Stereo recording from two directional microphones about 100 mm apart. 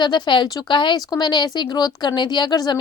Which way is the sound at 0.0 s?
50° left (ahead or behind).